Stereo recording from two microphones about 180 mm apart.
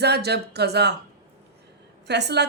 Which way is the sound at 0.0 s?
65° right (ahead or behind).